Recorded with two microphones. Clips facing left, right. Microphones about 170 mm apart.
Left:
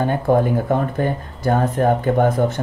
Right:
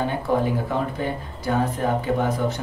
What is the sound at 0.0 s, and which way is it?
Speech, 50° left (ahead or behind).